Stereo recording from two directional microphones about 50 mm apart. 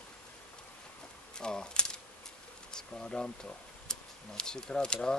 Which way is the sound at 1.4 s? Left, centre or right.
Centre.